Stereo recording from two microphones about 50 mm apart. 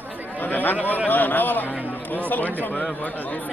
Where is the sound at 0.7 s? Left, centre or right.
Right.